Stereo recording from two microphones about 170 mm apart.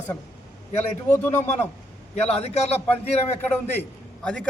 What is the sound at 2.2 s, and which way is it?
Speech, 40° left (ahead or behind).